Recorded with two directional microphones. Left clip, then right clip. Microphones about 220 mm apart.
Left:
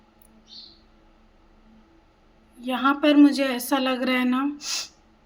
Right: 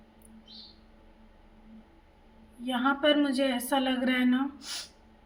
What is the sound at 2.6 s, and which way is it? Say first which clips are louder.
A woman's voice: left 5 dB; 35° left (ahead or behind).